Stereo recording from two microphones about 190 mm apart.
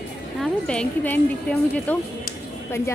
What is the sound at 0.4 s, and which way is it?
A woman's voice, 5° left (ahead or behind).